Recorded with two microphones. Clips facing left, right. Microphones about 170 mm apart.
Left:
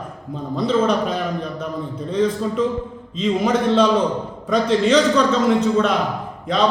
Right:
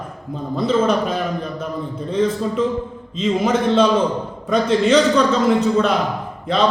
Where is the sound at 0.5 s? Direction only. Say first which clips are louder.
Right 1 dB; 5° right (ahead or behind).